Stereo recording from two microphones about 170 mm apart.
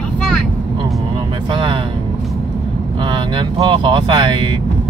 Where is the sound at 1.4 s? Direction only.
30° right (ahead or behind).